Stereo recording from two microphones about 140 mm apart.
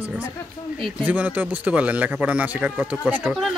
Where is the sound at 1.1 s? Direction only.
10° right (ahead or behind).